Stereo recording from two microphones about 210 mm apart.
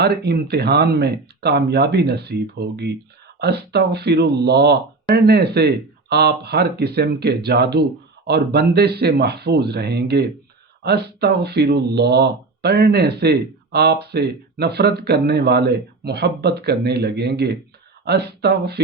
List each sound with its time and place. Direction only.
0.0 s speech: 50° right (ahead or behind)